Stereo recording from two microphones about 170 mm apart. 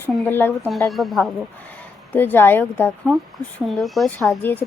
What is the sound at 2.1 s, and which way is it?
Speech, 10° left (ahead or behind).